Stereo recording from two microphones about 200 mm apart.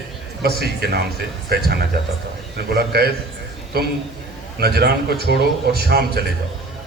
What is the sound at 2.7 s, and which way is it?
Speech, 50° right (ahead or behind).